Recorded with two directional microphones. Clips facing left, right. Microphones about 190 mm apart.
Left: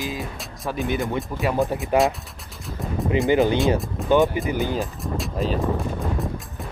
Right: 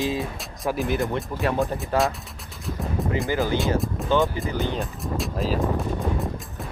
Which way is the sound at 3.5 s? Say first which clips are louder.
Left 2 dB; centre (ahead or behind).